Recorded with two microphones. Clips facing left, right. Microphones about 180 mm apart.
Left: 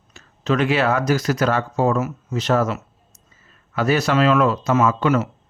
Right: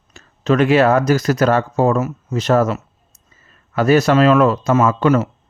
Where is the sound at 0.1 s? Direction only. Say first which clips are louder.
Right 5 dB; 45° right (ahead or behind).